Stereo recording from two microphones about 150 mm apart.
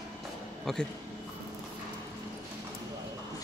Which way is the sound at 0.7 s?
5° left (ahead or behind).